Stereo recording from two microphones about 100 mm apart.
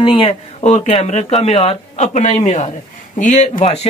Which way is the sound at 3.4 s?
90° left.